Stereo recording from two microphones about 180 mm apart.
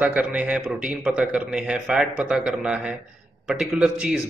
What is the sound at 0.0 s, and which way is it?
Speech, 5° right (ahead or behind).